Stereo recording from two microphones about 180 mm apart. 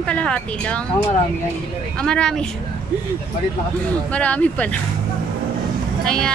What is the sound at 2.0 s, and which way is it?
Child singing, 5° left (ahead or behind).